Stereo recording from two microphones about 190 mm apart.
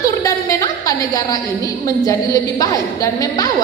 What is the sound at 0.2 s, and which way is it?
A woman's voice, 15° left (ahead or behind).